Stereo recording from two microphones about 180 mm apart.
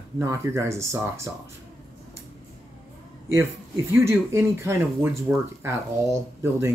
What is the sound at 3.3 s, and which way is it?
Speech, 15° right (ahead or behind).